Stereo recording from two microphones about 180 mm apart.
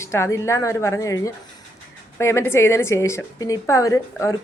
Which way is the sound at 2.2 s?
15° left (ahead or behind).